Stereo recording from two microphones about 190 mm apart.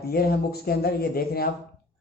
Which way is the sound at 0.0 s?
55° left (ahead or behind).